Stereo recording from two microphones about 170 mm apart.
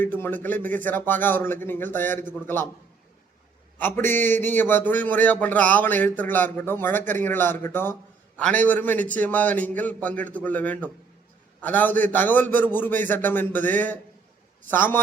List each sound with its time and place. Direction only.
0.0 s a man's voice: 10° left (ahead or behind)
3.8 s a man's voice: 10° left (ahead or behind)